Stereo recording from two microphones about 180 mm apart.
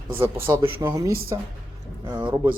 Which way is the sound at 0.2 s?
15° right (ahead or behind).